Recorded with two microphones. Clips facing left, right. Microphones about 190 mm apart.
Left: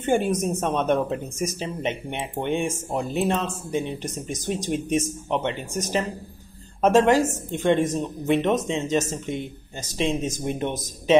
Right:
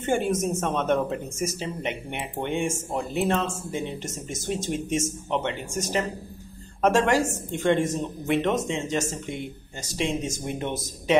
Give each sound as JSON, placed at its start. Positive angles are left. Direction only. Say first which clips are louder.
{"t": 0.0, "sound": "a woman's voice", "louder": "left 2 dB", "side_deg": 15}